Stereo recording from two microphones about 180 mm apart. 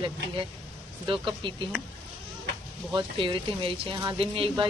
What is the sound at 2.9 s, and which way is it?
Speech, 30° right (ahead or behind).